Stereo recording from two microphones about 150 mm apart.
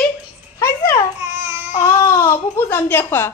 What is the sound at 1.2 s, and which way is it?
Babbling, 20° right (ahead or behind).